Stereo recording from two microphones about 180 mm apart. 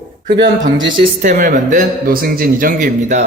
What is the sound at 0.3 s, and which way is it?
Speech, 90° right.